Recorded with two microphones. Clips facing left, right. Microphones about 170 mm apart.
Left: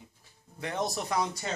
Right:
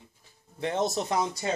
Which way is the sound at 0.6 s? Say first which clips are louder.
Right 5 dB; 25° right (ahead or behind).